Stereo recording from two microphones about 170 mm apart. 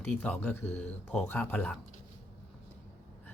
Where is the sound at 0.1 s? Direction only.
5° left (ahead or behind).